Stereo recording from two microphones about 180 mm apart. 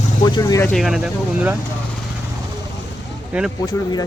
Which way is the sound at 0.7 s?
Centre (ahead or behind).